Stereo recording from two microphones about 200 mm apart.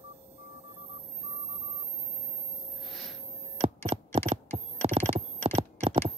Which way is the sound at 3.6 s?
30° right (ahead or behind).